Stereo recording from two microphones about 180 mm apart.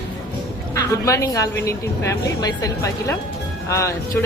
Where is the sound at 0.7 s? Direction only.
15° left (ahead or behind).